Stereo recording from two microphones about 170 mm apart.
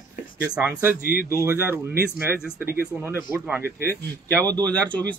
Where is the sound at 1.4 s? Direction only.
15° right (ahead or behind).